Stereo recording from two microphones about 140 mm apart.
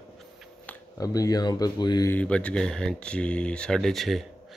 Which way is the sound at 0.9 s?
25° left (ahead or behind).